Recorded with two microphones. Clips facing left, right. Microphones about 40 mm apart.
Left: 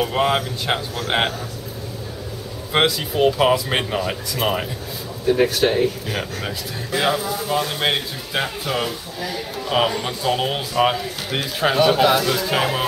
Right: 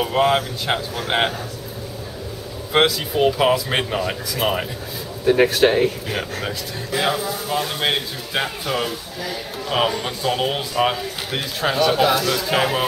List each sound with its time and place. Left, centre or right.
0.0 s speech: centre
2.7 s speech: centre
5.2 s speech: right
5.7 s speech: centre
6.1 s speech: centre